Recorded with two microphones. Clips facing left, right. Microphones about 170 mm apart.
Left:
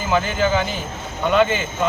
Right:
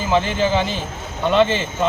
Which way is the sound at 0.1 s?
30° right (ahead or behind).